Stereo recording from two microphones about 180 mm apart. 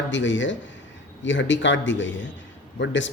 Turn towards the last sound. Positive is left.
turn(degrees=90)